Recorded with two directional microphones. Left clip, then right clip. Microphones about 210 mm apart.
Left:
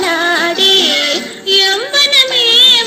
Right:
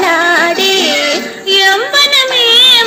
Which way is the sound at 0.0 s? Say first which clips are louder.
Right 4 dB; 25° right (ahead or behind).